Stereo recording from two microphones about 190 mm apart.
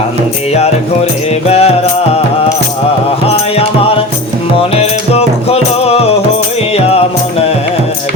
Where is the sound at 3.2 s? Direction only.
30° left (ahead or behind).